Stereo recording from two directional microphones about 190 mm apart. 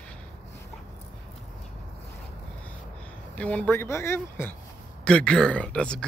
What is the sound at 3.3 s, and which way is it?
Speech, 5° left (ahead or behind).